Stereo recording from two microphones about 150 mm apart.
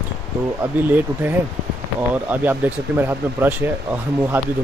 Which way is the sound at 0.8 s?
10° right (ahead or behind).